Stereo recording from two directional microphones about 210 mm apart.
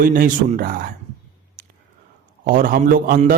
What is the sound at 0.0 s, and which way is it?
Speech, 40° right (ahead or behind).